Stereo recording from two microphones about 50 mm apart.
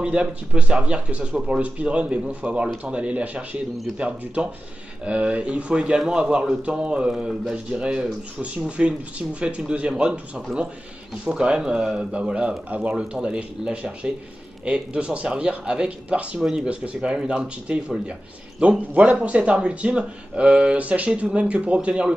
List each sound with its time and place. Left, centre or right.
0.0 s a man's voice: right